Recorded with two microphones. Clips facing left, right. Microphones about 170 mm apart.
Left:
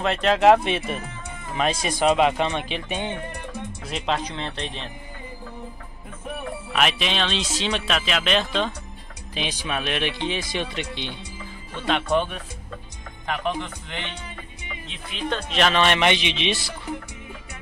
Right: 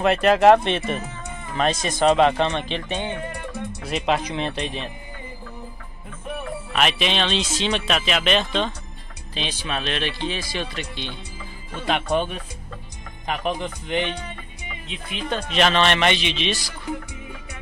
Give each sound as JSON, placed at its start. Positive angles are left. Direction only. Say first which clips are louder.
{"t": 0.0, "sound": "speech", "louder": "right 3 dB", "side_deg": -5}
{"t": 3.8, "sound": "speech", "louder": "right 4 dB", "side_deg": -5}
{"t": 6.7, "sound": "speech", "louder": "right 1 dB", "side_deg": 5}
{"t": 11.8, "sound": "speech", "louder": "even", "side_deg": -10}
{"t": 13.3, "sound": "speech", "louder": "right 1 dB", "side_deg": -15}
{"t": 15.8, "sound": "speech", "louder": "even", "side_deg": 10}